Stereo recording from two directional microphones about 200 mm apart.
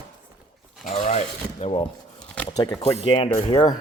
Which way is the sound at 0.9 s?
35° left (ahead or behind).